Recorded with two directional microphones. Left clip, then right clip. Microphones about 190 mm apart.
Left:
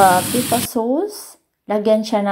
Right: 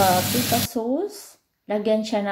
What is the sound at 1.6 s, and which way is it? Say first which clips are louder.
Speech: left 6 dB; 25° left (ahead or behind).